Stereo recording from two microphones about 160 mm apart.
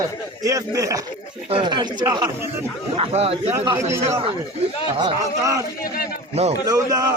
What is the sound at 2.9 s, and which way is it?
Speech, 40° right (ahead or behind).